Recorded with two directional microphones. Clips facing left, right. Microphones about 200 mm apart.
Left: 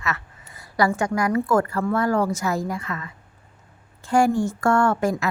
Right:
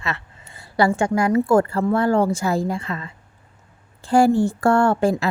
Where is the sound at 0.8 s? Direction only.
30° right (ahead or behind).